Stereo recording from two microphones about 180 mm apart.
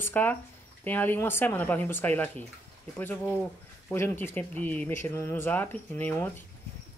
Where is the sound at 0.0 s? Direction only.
10° left (ahead or behind).